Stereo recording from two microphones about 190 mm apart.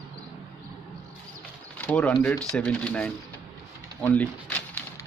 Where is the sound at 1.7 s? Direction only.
5° left (ahead or behind).